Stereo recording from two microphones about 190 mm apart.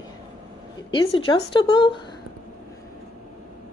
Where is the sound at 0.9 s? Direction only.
25° left (ahead or behind).